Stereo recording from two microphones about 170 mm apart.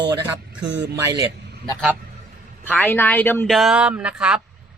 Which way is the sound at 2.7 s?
10° left (ahead or behind).